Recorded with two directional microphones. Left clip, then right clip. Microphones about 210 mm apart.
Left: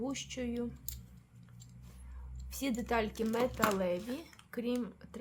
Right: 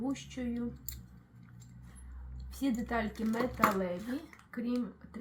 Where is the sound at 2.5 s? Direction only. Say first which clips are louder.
Even; 25° left (ahead or behind).